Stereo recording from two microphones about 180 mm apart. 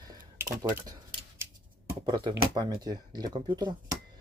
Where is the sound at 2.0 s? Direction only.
25° right (ahead or behind).